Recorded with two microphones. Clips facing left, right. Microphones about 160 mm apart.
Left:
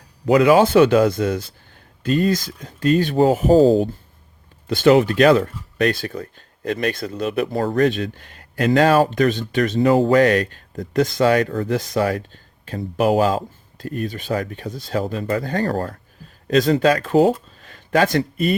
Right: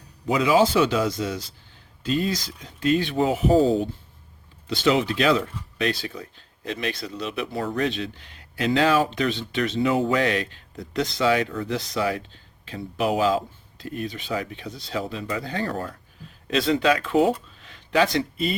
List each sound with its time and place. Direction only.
0.3 s a man's voice: 60° left (ahead or behind); by 3.8 s 40° left (ahead or behind)
4.7 s speech: 50° left (ahead or behind)
17.6 s a sound: 45° left (ahead or behind)